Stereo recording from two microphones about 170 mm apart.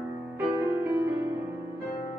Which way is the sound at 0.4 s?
15° right (ahead or behind).